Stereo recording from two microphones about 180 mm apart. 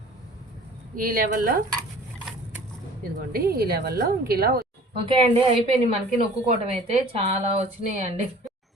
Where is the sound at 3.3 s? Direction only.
55° right (ahead or behind).